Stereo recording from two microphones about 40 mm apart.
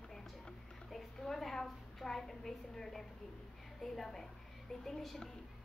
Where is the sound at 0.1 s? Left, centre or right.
Centre.